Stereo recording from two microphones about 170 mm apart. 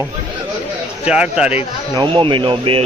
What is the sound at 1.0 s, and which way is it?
Speech, 5° right (ahead or behind).